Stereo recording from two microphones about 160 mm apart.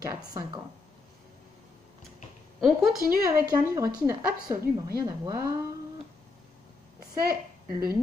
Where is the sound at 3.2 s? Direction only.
20° right (ahead or behind).